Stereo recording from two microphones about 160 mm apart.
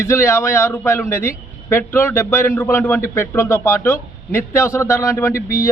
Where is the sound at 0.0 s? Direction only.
15° left (ahead or behind).